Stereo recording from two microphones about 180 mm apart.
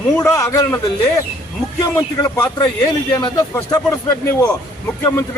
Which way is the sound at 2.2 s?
20° left (ahead or behind).